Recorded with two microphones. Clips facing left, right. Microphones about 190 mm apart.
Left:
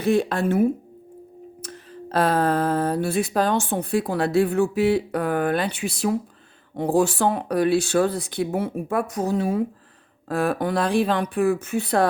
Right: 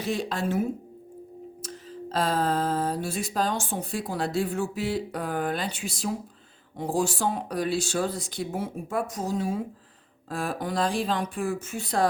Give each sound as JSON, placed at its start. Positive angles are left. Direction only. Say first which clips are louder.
{"t": 0.0, "sound": "music", "louder": "left 8 dB", "side_deg": 55}